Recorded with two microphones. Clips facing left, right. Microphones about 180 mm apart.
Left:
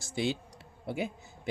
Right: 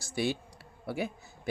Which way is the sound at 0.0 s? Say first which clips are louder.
Even; 20° left (ahead or behind).